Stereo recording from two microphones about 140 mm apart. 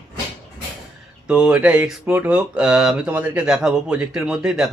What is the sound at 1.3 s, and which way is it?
Speech, 5° right (ahead or behind).